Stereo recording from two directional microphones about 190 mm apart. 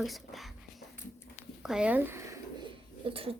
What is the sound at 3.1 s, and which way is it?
Speech, 30° right (ahead or behind).